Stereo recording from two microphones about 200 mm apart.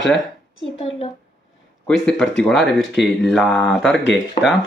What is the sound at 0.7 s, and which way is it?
Speech, 30° left (ahead or behind).